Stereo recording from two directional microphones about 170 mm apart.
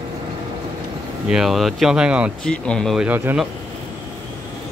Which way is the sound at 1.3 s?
Centre (ahead or behind).